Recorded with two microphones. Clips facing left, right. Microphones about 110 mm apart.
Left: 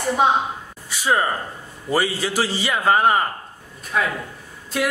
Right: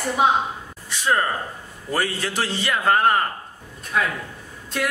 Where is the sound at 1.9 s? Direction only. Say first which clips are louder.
Left 3 dB; 5° left (ahead or behind).